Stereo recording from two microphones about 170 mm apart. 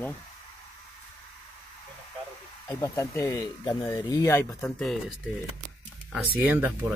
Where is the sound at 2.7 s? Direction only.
15° left (ahead or behind).